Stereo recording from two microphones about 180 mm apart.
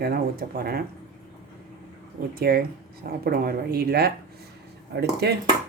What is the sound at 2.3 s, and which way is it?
Speech, 55° right (ahead or behind).